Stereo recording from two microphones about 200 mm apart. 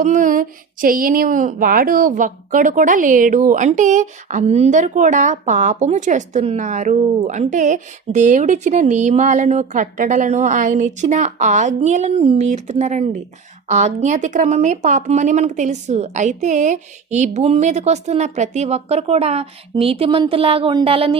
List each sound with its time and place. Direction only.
0.0 s a woman's voice: 40° right (ahead or behind)